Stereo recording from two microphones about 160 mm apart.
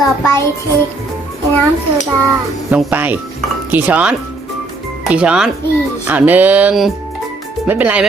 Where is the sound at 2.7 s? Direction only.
10° right (ahead or behind).